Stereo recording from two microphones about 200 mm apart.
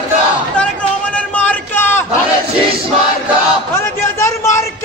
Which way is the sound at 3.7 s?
10° left (ahead or behind).